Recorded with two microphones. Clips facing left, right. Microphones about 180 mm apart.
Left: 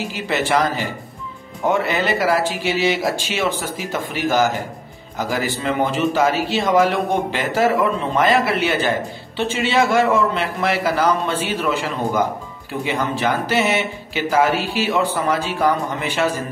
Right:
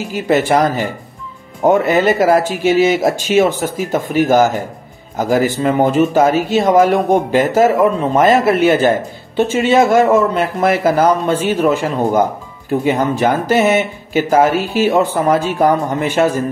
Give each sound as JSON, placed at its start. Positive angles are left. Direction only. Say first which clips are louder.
{"t": 0.1, "sound": "a man's voice", "louder": "right 8 dB", "side_deg": -45}